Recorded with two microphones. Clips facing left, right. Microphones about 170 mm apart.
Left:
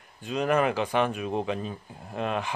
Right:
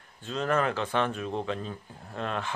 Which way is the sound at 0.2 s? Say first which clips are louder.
Left 3 dB; 15° left (ahead or behind).